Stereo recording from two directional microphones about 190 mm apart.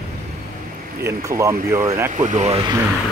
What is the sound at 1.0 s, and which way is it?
Speech, 15° right (ahead or behind).